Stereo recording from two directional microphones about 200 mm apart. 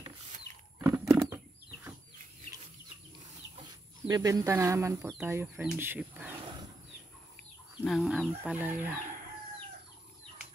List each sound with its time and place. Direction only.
0.7 s a sound: 15° right (ahead or behind)
4.1 s speech: 20° right (ahead or behind)
7.8 s speech: centre (ahead or behind)